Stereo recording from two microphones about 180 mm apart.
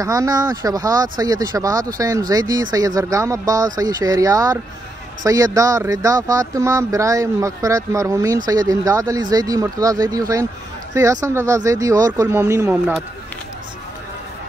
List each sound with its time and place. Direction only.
0.0 s speech: 20° right (ahead or behind)